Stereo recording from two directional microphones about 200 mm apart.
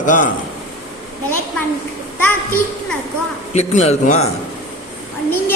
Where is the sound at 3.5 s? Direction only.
35° left (ahead or behind).